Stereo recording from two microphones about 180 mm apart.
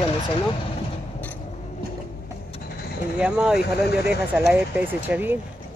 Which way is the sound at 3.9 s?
60° left (ahead or behind).